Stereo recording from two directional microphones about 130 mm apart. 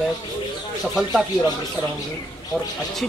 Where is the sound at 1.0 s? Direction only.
Centre (ahead or behind).